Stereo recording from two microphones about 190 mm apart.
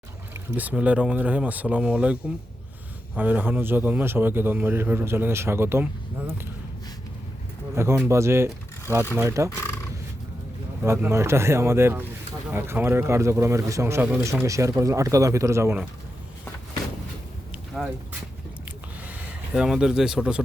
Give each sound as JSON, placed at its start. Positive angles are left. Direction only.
{"t": 0.5, "sound": "speech", "side_deg": -10}
{"t": 7.8, "sound": "speech", "side_deg": -15}
{"t": 10.8, "sound": "speech", "side_deg": -15}
{"t": 17.7, "sound": "a sound", "side_deg": 0}
{"t": 19.0, "sound": "speech", "side_deg": -5}